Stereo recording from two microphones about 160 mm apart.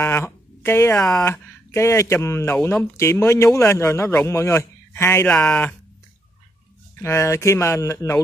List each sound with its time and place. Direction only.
0.0 s a sound: 15° left (ahead or behind)
1.0 s speech: 5° left (ahead or behind)
1.3 s speech: 15° left (ahead or behind)
7.0 s speech: 15° left (ahead or behind)